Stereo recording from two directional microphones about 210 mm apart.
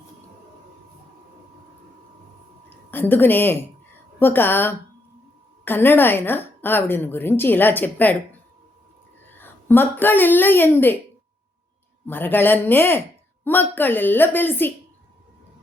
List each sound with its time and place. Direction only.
2.6 s a woman's voice: 10° left (ahead or behind)
9.3 s speech: 10° left (ahead or behind)
12.0 s a woman's voice: 10° left (ahead or behind)